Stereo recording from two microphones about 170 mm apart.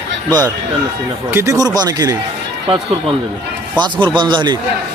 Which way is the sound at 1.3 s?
20° right (ahead or behind).